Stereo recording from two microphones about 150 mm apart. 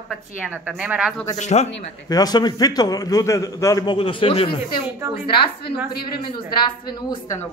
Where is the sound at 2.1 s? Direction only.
25° left (ahead or behind).